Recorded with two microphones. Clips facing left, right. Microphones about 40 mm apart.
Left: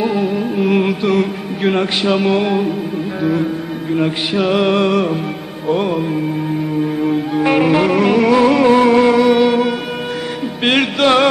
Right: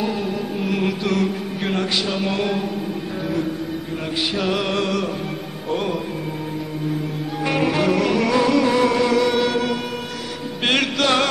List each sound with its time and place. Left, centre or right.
0.0 s music: left
7.1 s music: left